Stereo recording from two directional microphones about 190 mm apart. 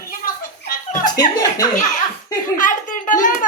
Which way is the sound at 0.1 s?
45° left (ahead or behind).